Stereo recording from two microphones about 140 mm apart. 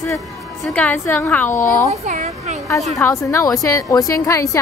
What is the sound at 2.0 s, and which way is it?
Speech, 55° right (ahead or behind).